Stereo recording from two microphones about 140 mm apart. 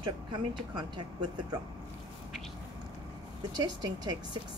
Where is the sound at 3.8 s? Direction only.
30° right (ahead or behind).